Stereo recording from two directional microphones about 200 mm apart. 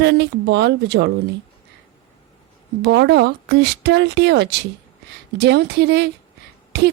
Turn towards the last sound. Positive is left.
turn(degrees=-60)  # may be behind; listen again after turning